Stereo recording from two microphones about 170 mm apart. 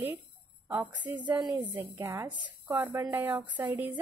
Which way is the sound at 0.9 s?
10° right (ahead or behind).